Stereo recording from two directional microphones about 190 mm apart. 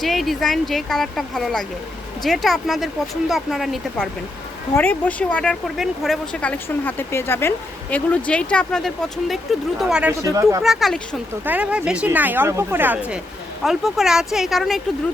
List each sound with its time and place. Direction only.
0.0 s speech: centre (ahead or behind); by 10.6 s 15° right (ahead or behind)
10.6 s speech: centre (ahead or behind)